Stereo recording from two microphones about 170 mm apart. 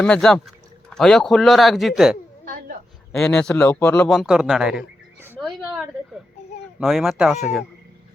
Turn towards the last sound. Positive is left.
turn(degrees=0)  # may be behind; listen again after turning